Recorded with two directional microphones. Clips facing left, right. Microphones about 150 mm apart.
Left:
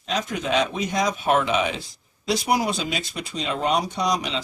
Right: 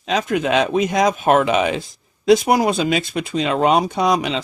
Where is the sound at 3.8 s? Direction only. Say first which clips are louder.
Right 6 dB; 55° right (ahead or behind).